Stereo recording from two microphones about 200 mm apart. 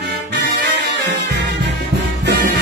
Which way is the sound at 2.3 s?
60° right (ahead or behind).